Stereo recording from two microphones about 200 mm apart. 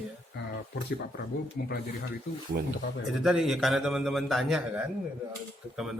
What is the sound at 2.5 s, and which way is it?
Speech, 50° right (ahead or behind).